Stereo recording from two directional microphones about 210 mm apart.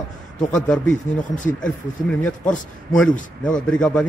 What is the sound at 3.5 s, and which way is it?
Speech, 5° left (ahead or behind).